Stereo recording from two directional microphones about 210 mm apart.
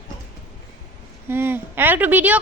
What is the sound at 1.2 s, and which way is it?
A woman's voice, 10° right (ahead or behind).